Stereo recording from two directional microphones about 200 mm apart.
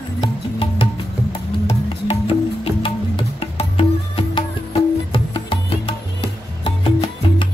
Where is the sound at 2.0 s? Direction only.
30° left (ahead or behind).